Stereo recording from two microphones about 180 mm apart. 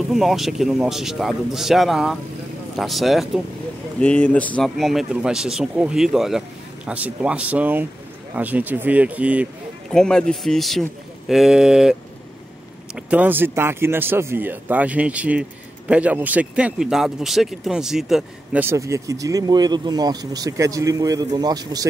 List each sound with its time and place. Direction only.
0.1 s a man's voice: centre (ahead or behind)
9.8 s a man's voice: 5° left (ahead or behind); by 21.8 s 20° right (ahead or behind)